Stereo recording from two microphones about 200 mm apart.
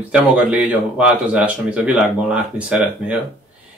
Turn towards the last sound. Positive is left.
turn(degrees=-5)  # may be behind; listen again after turning